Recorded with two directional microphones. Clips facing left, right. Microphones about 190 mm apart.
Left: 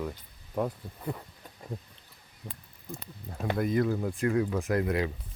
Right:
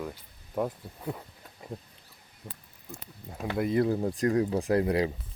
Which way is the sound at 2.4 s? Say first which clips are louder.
Left 1 dB; centre (ahead or behind).